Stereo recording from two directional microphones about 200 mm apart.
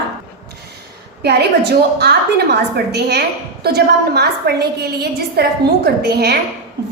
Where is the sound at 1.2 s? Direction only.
55° right (ahead or behind).